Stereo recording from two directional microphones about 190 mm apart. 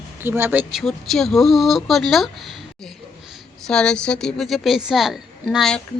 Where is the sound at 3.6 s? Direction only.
5° left (ahead or behind).